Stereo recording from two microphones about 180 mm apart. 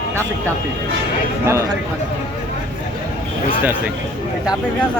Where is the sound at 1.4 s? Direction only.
15° right (ahead or behind).